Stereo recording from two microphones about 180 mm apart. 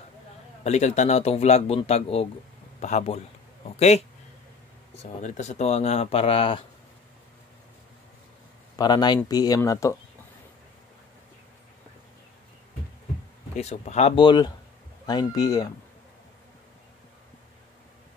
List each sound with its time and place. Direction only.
0.7 s speech: 40° left (ahead or behind)
5.0 s speech: 40° left (ahead or behind)
8.7 s speech: 25° left (ahead or behind)
13.6 s speech: 40° left (ahead or behind); by 15.7 s 20° left (ahead or behind)